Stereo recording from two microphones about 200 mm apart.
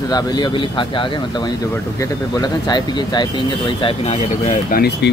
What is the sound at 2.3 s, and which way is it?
Speech, 20° left (ahead or behind).